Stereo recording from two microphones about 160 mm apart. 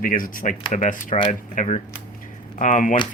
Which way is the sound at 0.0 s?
60° left (ahead or behind).